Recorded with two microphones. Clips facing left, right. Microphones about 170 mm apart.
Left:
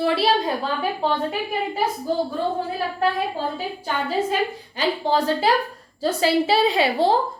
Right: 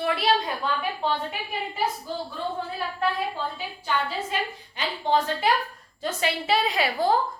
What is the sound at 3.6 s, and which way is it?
A woman's voice, 40° left (ahead or behind).